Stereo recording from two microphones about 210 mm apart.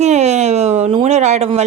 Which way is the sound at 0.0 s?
30° right (ahead or behind).